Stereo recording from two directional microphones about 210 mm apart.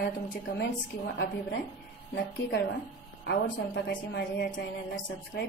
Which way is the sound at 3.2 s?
60° left (ahead or behind).